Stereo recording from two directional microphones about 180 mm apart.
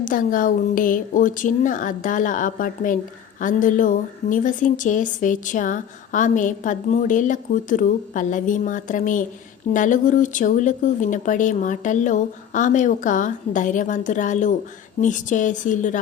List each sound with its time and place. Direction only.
0.0 s a woman's voice: 50° left (ahead or behind)